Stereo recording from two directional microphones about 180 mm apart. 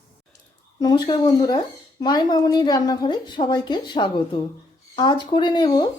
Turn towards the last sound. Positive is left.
turn(degrees=25)  # may be behind; listen again after turning